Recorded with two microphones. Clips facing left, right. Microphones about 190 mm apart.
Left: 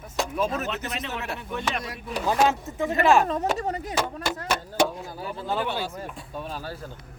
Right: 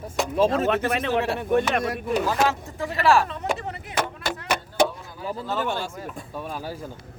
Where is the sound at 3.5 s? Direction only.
40° left (ahead or behind).